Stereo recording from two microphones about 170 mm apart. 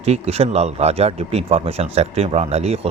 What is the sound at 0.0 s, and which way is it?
Speech, 35° right (ahead or behind).